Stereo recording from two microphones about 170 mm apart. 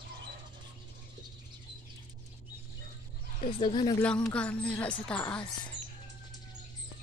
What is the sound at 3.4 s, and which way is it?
Speech, 30° left (ahead or behind).